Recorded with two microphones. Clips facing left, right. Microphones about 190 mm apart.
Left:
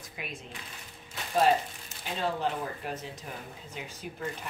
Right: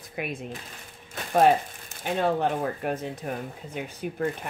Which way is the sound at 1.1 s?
55° right (ahead or behind).